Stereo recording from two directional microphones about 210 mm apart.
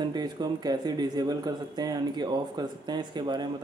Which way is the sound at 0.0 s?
20° right (ahead or behind).